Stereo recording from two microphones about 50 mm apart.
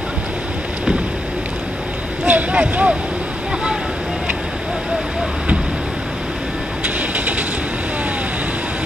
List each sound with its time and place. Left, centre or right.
2.2 s speech: right
7.0 s train: right